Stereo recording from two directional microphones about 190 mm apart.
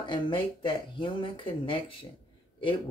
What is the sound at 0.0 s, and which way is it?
Speech, 25° left (ahead or behind).